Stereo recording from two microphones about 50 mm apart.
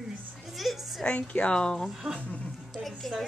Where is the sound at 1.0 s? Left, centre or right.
Left.